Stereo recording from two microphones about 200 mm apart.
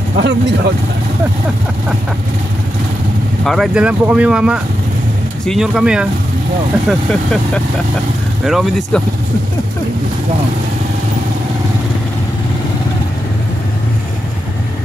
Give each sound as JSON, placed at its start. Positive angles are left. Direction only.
{"t": 0.2, "sound": "speech", "side_deg": -60}
{"t": 3.4, "sound": "speech", "side_deg": 0}